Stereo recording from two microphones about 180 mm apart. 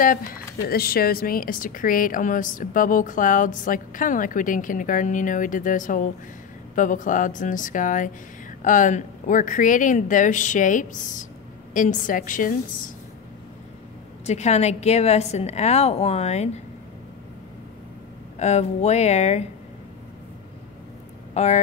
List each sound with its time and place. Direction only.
0.0 s a woman's voice: 50° left (ahead or behind)
14.2 s a woman's voice: 40° left (ahead or behind)
18.4 s a woman's voice: 35° left (ahead or behind)
21.3 s vehicle: 35° left (ahead or behind)